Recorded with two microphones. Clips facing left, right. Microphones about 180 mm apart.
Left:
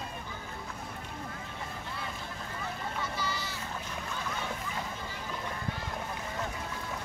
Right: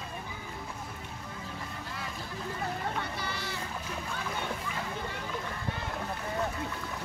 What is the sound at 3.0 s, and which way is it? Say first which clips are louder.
Children playing: left 1 dB; 60° right (ahead or behind).